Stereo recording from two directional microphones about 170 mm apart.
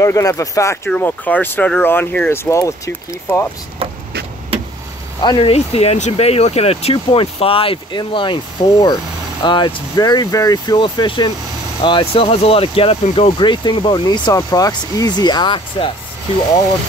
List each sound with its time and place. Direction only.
0.0 s speech: 20° left (ahead or behind)
3.8 s vehicle: 35° right (ahead or behind)
5.2 s speech: 30° left (ahead or behind)